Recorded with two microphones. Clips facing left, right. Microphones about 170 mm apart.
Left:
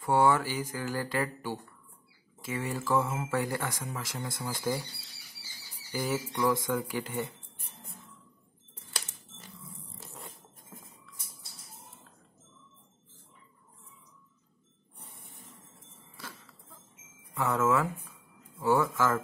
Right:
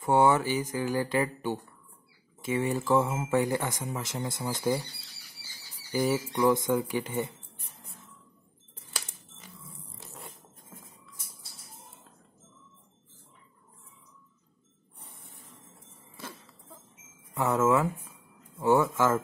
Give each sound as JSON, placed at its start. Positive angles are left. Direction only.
{"t": 0.0, "sound": "speech", "side_deg": -20}
{"t": 5.9, "sound": "speech", "side_deg": -20}
{"t": 17.3, "sound": "speech", "side_deg": -20}